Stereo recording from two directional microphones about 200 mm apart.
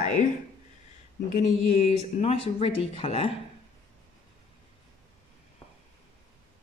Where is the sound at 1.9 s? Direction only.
35° left (ahead or behind).